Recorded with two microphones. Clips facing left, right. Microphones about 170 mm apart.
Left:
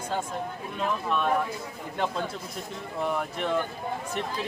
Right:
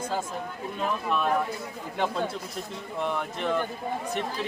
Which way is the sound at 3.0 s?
5° left (ahead or behind).